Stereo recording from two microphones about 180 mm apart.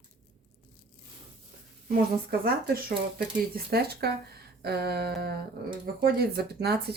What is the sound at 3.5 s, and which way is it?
Speech, 60° right (ahead or behind).